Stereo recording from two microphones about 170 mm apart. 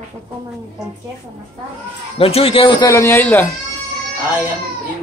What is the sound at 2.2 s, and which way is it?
Speech, 35° left (ahead or behind).